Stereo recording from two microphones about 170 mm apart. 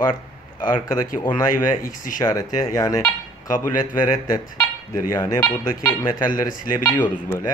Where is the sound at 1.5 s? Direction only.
50° left (ahead or behind).